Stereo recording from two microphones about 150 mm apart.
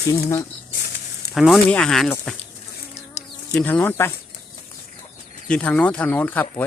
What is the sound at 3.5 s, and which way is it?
Speech, 10° left (ahead or behind).